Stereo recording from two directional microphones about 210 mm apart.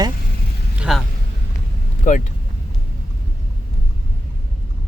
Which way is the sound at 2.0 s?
40° left (ahead or behind).